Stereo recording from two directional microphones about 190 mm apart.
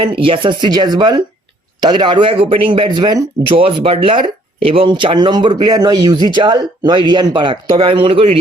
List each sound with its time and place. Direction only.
0.0 s speech: 25° right (ahead or behind)